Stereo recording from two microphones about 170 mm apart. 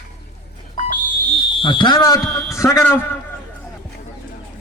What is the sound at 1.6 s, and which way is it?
A man's voice, 30° left (ahead or behind).